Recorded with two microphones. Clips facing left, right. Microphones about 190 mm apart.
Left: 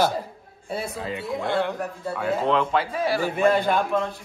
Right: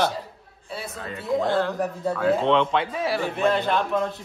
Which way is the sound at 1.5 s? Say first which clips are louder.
Right 2 dB; 15° left (ahead or behind).